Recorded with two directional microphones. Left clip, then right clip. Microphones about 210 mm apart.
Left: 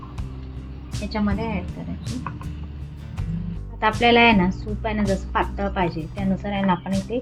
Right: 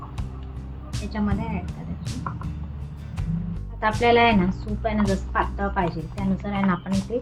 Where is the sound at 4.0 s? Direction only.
15° left (ahead or behind).